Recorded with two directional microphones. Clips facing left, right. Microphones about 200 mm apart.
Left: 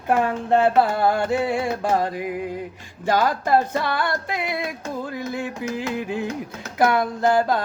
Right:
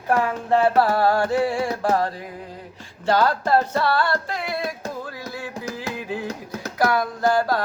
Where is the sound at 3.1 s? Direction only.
15° left (ahead or behind).